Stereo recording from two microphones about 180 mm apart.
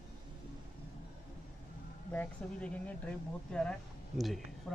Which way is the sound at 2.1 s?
10° left (ahead or behind).